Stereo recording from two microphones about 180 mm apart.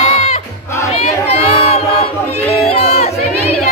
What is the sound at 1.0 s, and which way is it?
Crowd, 35° left (ahead or behind).